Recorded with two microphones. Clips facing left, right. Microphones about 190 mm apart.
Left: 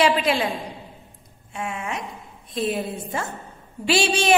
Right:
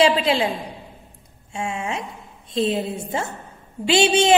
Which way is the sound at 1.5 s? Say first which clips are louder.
Right 3 dB; 30° right (ahead or behind).